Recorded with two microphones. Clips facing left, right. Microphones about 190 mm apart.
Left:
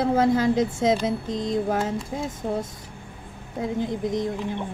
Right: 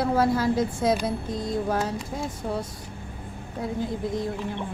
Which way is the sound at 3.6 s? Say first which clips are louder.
Left 3 dB; 20° left (ahead or behind).